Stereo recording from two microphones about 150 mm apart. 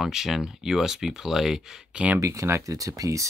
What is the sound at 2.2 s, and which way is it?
Speech, 20° right (ahead or behind).